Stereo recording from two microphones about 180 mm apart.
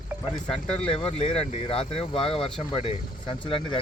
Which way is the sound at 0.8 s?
30° left (ahead or behind).